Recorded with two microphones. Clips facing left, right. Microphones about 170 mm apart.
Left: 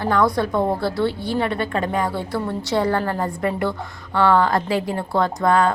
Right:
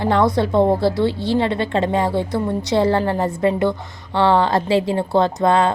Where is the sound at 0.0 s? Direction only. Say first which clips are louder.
Right 2 dB; 25° right (ahead or behind).